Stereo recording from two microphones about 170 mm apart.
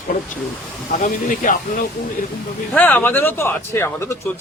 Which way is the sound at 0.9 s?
50° left (ahead or behind).